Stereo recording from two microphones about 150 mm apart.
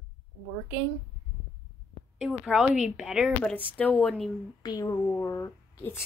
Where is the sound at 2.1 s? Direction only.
5° right (ahead or behind).